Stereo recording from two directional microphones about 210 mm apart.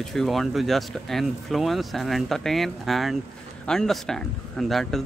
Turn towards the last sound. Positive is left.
turn(degrees=0)  # may be behind; listen again after turning